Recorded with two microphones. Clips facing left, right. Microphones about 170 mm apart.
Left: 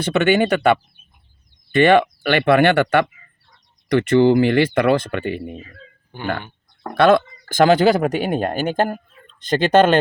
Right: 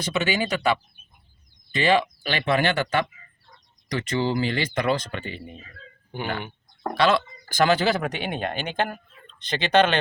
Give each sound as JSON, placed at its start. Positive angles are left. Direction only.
{"t": 0.0, "sound": "speech", "side_deg": 60}
{"t": 6.9, "sound": "speech", "side_deg": 55}